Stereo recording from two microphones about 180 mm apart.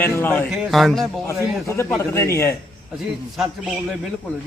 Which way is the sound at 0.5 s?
Centre (ahead or behind).